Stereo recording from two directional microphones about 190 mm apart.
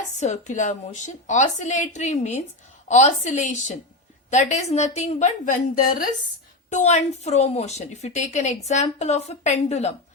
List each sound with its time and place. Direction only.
0.2 s a woman's voice: 40° left (ahead or behind)
6.7 s a woman's voice: 40° left (ahead or behind)